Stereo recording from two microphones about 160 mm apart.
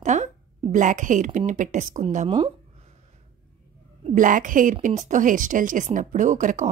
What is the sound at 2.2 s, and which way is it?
Speech, 35° right (ahead or behind).